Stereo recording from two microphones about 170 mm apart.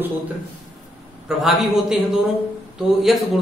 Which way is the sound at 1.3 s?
Centre (ahead or behind).